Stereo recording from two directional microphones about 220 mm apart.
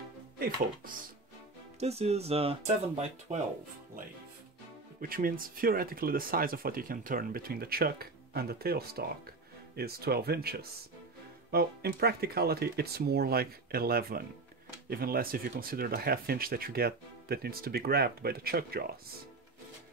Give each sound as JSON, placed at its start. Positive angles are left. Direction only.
{"t": 1.8, "sound": "speech", "side_deg": -30}
{"t": 5.0, "sound": "speech", "side_deg": -40}